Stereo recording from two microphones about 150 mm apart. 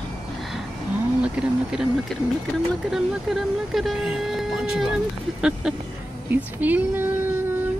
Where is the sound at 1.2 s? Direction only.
5° right (ahead or behind).